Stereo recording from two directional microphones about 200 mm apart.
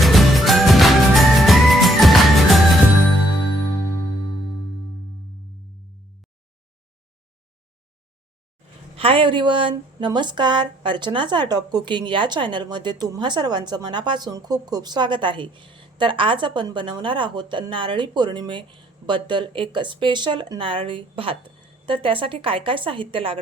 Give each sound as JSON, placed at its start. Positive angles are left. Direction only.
{"t": 0.0, "sound": "music", "side_deg": 0}
{"t": 9.0, "sound": "speech", "side_deg": -25}